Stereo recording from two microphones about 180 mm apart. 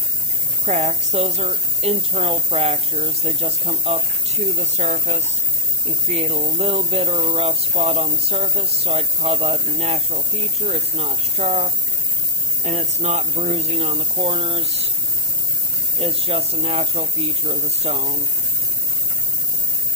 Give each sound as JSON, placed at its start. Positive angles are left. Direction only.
{"t": 0.6, "sound": "speech", "side_deg": -40}
{"t": 16.0, "sound": "speech", "side_deg": -35}